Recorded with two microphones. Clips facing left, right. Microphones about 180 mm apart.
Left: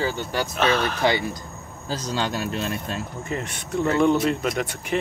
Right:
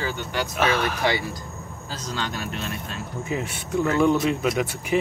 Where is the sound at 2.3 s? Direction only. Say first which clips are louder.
Left 4 dB; 35° left (ahead or behind).